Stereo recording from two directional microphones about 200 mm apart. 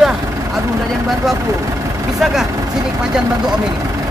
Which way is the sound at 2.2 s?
Centre (ahead or behind).